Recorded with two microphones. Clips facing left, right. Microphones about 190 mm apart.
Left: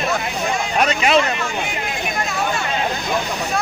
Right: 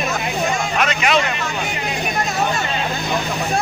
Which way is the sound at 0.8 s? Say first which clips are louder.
Left 3 dB; 35° left (ahead or behind).